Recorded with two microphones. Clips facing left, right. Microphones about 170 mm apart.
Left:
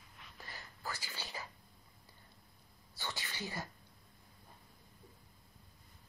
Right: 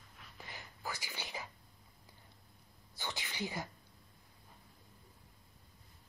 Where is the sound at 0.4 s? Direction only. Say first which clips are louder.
Right 1 dB; 15° right (ahead or behind).